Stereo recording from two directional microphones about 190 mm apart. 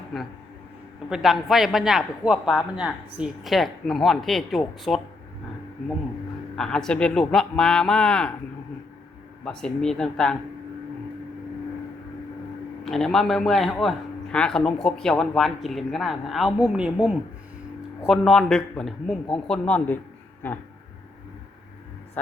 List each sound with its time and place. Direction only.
0.1 s a man's voice: centre (ahead or behind)
6.6 s a man's voice: 5° left (ahead or behind)
9.4 s a man's voice: 5° left (ahead or behind)
12.8 s a man's voice: centre (ahead or behind)